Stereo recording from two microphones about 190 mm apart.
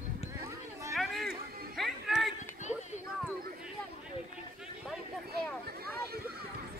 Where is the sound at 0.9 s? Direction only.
Centre (ahead or behind).